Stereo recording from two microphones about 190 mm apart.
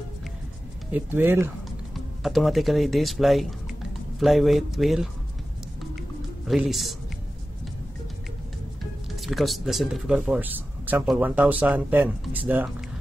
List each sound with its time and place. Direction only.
0.9 s speech: 10° right (ahead or behind)
2.0 s speech: centre (ahead or behind)
5.8 s music: centre (ahead or behind)
9.1 s speech: centre (ahead or behind)